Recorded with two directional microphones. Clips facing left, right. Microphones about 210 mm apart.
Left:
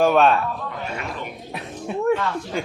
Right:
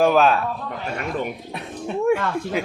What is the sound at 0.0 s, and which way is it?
Speech, centre (ahead or behind).